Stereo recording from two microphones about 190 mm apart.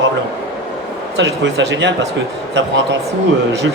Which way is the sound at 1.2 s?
70° right (ahead or behind).